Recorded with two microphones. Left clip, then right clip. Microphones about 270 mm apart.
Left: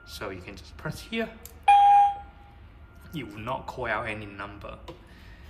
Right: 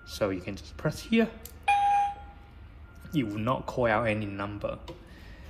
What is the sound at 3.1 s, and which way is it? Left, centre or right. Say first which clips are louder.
Speech: right 4 dB; centre.